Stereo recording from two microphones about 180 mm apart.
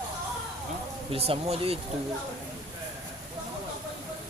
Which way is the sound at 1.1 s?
35° right (ahead or behind).